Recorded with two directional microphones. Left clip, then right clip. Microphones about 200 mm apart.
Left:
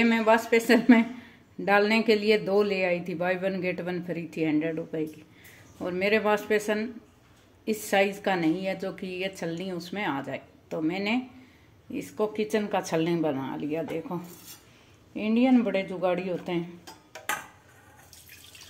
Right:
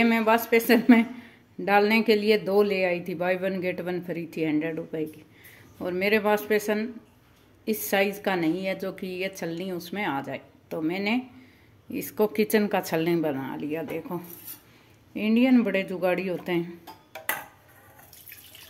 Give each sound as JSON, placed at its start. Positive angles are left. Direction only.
{"t": 0.0, "sound": "speech", "side_deg": -5}
{"t": 11.9, "sound": "speech", "side_deg": -20}
{"t": 12.7, "sound": "speech", "side_deg": -10}